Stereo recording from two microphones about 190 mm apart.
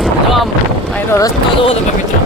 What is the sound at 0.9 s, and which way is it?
Speech, 10° left (ahead or behind).